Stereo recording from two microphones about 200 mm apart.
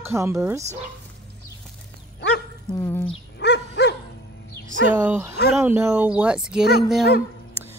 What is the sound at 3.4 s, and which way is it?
Dog, 60° left (ahead or behind).